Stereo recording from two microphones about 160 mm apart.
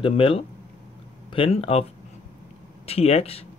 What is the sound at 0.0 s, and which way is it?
Speech, 35° left (ahead or behind).